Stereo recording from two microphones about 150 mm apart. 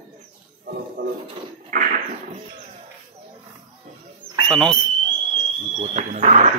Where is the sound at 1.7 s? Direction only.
65° right (ahead or behind).